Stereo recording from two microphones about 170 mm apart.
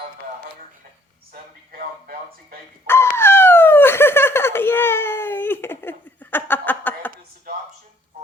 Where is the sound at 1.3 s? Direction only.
60° right (ahead or behind).